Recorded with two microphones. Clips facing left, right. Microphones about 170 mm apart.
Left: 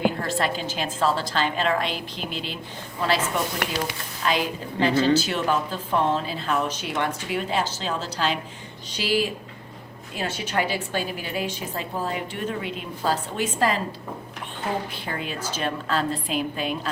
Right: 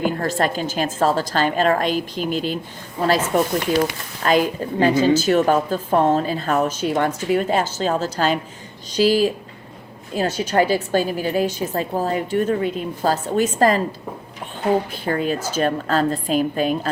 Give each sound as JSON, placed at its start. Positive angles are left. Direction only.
{"t": 0.0, "sound": "a woman's voice", "side_deg": -45}
{"t": 15.0, "sound": "a woman's voice", "side_deg": -45}